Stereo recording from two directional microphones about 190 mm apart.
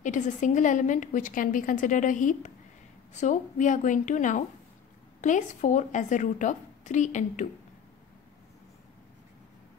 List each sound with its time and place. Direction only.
0.0 s a woman's voice: 40° left (ahead or behind)